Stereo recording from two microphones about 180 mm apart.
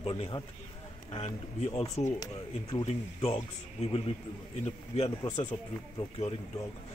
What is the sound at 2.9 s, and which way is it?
Speech, 35° left (ahead or behind).